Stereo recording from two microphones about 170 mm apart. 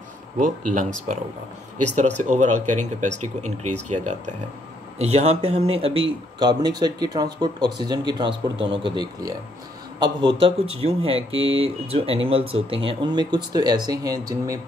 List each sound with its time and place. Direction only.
0.4 s speech: 50° right (ahead or behind); by 14.6 s 20° right (ahead or behind)